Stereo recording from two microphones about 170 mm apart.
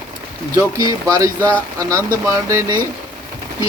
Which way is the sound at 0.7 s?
20° right (ahead or behind).